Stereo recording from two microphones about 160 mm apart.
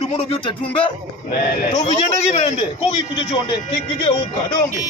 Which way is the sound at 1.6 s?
50° left (ahead or behind).